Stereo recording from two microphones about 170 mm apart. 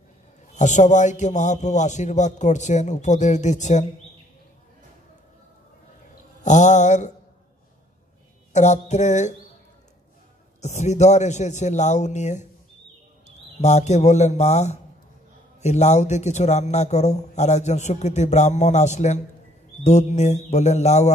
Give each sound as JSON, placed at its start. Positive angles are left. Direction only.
{"t": 0.6, "sound": "a man's voice", "side_deg": 45}
{"t": 6.4, "sound": "mantra", "side_deg": 45}
{"t": 8.5, "sound": "a man's voice", "side_deg": 45}
{"t": 10.6, "sound": "a man's voice", "side_deg": 40}
{"t": 13.6, "sound": "a man's voice", "side_deg": 40}